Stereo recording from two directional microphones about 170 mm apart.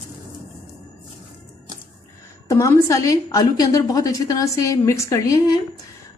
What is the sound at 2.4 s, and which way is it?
A woman's voice, 15° left (ahead or behind).